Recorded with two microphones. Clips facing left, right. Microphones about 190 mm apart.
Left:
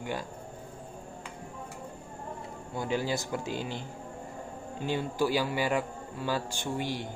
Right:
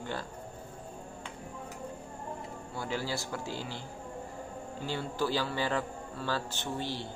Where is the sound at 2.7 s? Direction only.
20° left (ahead or behind).